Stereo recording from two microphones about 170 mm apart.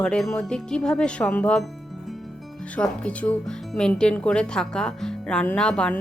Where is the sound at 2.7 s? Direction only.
5° left (ahead or behind).